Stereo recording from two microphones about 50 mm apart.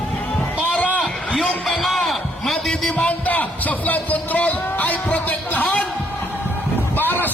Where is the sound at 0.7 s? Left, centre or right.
Left.